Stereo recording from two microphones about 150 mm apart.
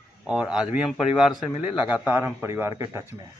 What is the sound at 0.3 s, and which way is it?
A man's voice, 5° right (ahead or behind).